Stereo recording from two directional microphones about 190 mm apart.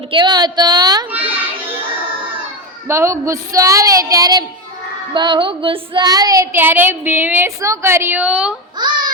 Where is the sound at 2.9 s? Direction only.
15° right (ahead or behind).